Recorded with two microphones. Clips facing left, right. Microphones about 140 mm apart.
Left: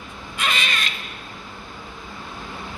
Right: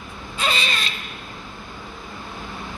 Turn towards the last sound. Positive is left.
turn(degrees=-30)  # may be behind; listen again after turning